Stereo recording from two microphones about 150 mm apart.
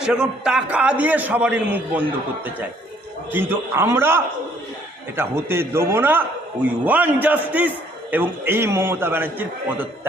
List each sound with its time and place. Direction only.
0.0 s a man's voice: 5° right (ahead or behind)